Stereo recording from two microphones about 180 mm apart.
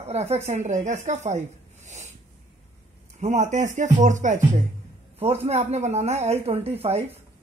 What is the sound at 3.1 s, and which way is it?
Speech, 40° right (ahead or behind).